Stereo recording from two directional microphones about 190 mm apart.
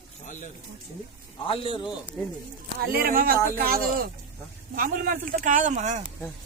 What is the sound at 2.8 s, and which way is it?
Speech, 50° right (ahead or behind).